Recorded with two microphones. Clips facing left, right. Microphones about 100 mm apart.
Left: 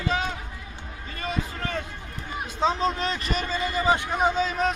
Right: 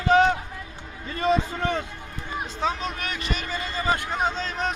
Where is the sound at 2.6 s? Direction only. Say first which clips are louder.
Left 5 dB; 30° left (ahead or behind).